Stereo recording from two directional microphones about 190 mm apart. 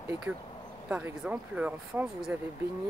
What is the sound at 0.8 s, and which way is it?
Speech, 5° right (ahead or behind).